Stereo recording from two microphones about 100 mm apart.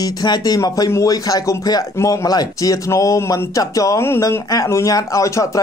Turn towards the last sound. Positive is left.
turn(degrees=35)  # may be behind; listen again after turning